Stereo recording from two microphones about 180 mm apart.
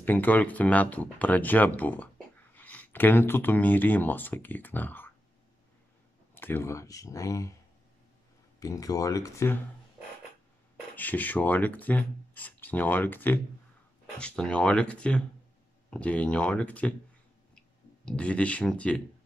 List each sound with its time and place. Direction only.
0.0 s speech: 10° left (ahead or behind)
6.3 s speech: 10° left (ahead or behind)
8.5 s speech: 20° left (ahead or behind)
11.0 s speech: 10° left (ahead or behind)